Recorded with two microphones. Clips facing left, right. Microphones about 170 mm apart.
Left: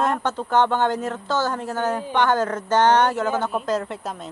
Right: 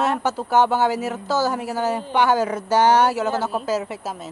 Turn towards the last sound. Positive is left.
turn(degrees=-5)  # may be behind; listen again after turning